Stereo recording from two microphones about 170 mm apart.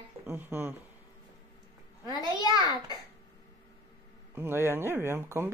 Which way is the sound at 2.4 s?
20° left (ahead or behind).